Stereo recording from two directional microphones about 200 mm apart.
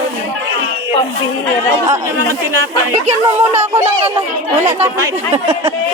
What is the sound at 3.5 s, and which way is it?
Speech, 10° right (ahead or behind).